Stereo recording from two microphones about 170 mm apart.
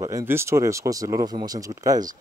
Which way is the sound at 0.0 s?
15° right (ahead or behind).